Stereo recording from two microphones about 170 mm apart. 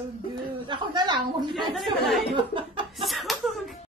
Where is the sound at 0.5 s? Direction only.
25° right (ahead or behind).